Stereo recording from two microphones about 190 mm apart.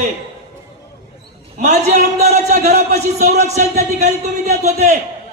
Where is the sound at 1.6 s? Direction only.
40° right (ahead or behind).